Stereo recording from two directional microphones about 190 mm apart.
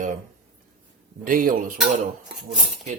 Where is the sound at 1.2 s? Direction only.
45° right (ahead or behind).